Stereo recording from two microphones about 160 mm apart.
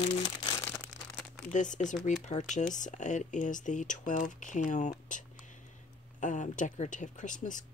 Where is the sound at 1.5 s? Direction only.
50° left (ahead or behind).